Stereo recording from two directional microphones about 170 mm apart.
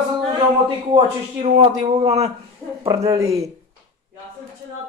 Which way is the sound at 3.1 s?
20° right (ahead or behind).